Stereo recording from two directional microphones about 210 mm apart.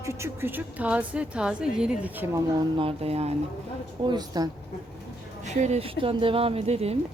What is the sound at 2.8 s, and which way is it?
Speech, 30° right (ahead or behind).